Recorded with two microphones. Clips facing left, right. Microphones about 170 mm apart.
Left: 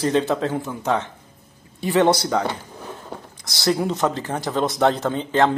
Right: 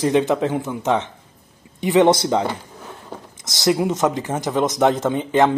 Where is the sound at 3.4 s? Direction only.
20° right (ahead or behind).